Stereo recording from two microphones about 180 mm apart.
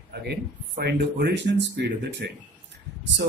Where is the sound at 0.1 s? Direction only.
65° right (ahead or behind).